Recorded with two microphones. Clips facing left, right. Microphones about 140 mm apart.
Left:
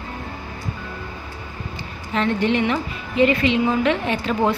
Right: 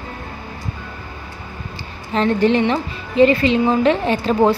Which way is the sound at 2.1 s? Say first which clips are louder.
Right 4 dB; 35° right (ahead or behind).